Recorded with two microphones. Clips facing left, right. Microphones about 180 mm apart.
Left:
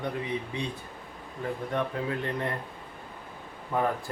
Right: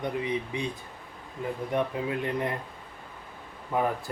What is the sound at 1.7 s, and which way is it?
Speech, 15° right (ahead or behind).